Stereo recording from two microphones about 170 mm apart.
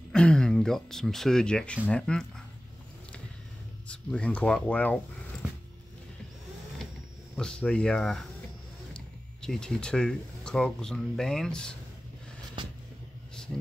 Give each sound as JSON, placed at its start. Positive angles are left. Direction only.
{"t": 0.1, "sound": "speech", "side_deg": 5}
{"t": 3.8, "sound": "speech", "side_deg": 5}
{"t": 7.3, "sound": "speech", "side_deg": 5}
{"t": 12.6, "sound": "vehicle", "side_deg": -30}